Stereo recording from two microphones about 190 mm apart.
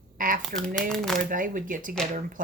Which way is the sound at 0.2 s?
45° right (ahead or behind).